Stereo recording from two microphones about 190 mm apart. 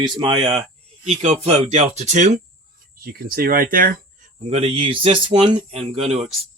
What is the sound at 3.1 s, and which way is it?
Speech, 50° right (ahead or behind).